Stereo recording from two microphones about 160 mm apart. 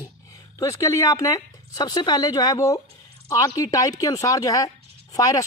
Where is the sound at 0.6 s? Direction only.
20° left (ahead or behind).